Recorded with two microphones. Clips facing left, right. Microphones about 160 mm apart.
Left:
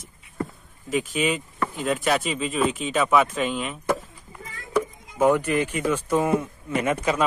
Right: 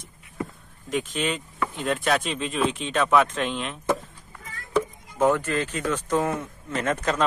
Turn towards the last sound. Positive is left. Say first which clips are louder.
# left 2 dB
turn(degrees=10)  # may be behind; listen again after turning